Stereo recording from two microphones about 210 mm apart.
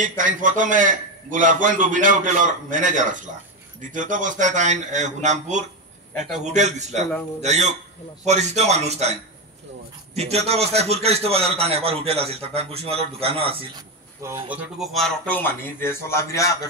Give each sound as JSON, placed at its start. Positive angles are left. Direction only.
{"t": 0.2, "sound": "a man's voice", "side_deg": -40}
{"t": 10.1, "sound": "a man's voice", "side_deg": -30}
{"t": 14.2, "sound": "speech", "side_deg": -10}